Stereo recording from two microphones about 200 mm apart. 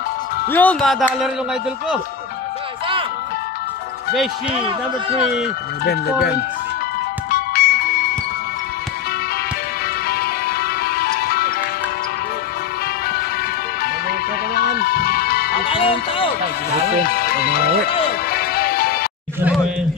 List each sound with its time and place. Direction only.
0.5 s music: 10° left (ahead or behind)
4.1 s music: centre (ahead or behind)
4.6 s speech: 30° right (ahead or behind)
7.2 s music: 50° left (ahead or behind)
10.0 s music: 50° left (ahead or behind)
14.5 s music: 50° left (ahead or behind)
15.7 s music: 25° left (ahead or behind)
17.0 s speech: 50° left (ahead or behind)
18.3 s music: 50° left (ahead or behind)